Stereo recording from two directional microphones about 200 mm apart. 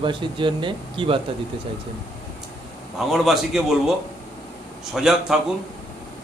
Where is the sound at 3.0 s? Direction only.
Centre (ahead or behind).